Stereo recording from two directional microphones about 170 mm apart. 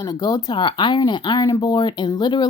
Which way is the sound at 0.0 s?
20° left (ahead or behind).